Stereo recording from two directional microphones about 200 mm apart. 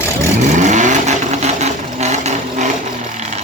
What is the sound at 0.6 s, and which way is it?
Vehicle, 35° right (ahead or behind).